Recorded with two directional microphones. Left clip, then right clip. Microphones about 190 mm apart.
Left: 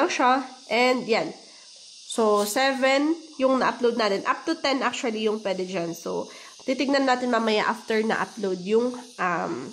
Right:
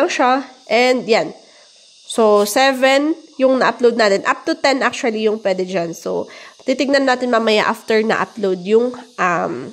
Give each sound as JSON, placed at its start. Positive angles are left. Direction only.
{"t": 0.0, "sound": "speech", "side_deg": -30}